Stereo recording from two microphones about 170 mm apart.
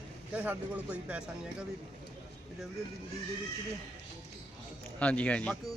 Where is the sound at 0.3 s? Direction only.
10° right (ahead or behind).